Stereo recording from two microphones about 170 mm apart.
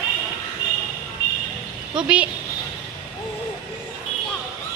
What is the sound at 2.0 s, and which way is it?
Speech, 5° right (ahead or behind).